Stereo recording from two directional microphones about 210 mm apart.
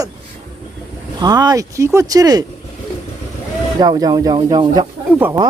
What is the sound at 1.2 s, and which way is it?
A woman's voice, 20° right (ahead or behind).